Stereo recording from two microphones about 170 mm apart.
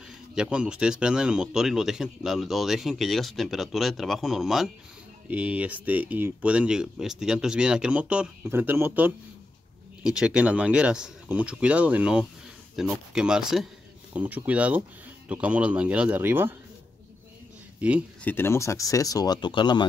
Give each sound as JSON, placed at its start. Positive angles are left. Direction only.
{"t": 0.3, "sound": "speech", "side_deg": -5}
{"t": 17.7, "sound": "speech", "side_deg": -10}
{"t": 18.2, "sound": "speech", "side_deg": 15}